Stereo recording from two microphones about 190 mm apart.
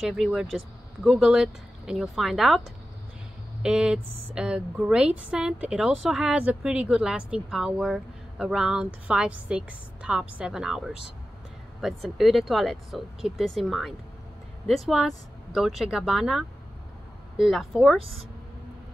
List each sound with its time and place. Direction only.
0.0 s a woman's voice: centre (ahead or behind)
3.6 s a woman's voice: 5° right (ahead or behind)